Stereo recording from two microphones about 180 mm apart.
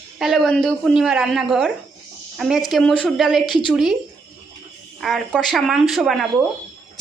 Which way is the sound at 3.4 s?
25° left (ahead or behind).